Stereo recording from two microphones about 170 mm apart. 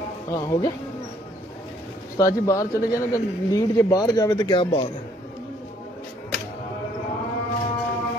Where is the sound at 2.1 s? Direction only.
20° left (ahead or behind).